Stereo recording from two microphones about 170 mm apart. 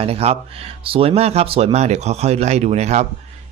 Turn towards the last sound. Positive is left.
turn(degrees=-40)  # may be behind; listen again after turning